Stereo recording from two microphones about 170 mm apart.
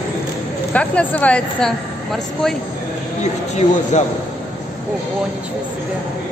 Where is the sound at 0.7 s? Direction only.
10° left (ahead or behind).